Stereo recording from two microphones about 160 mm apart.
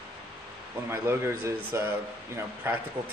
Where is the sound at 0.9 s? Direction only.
15° right (ahead or behind).